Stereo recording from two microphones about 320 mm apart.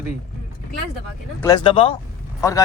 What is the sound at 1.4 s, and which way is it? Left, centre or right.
Speech, centre.